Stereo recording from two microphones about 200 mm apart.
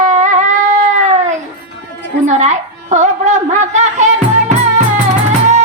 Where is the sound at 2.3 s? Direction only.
35° right (ahead or behind).